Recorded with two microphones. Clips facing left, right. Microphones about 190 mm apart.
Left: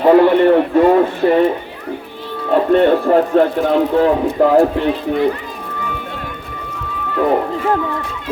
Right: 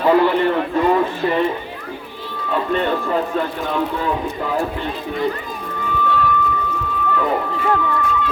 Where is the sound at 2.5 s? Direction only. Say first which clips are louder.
Left 8 dB; 50° left (ahead or behind).